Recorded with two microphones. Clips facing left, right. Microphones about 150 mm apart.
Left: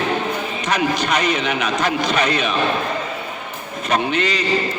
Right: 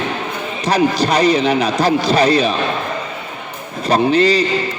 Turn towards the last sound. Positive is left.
turn(degrees=-35)  # may be behind; listen again after turning